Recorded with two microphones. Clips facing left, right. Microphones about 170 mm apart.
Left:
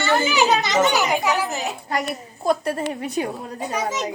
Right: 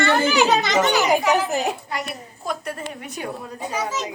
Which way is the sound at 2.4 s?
35° left (ahead or behind).